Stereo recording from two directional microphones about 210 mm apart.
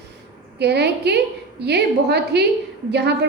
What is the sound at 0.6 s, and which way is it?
A woman's voice, 50° right (ahead or behind).